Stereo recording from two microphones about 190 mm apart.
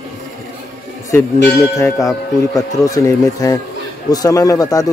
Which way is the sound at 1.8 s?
15° left (ahead or behind).